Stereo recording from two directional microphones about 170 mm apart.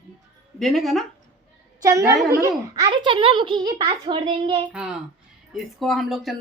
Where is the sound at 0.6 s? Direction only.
Centre (ahead or behind).